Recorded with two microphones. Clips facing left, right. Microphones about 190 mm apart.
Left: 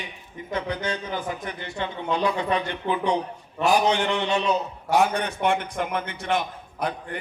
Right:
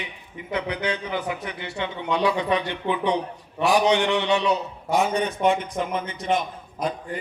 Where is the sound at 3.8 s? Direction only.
20° right (ahead or behind).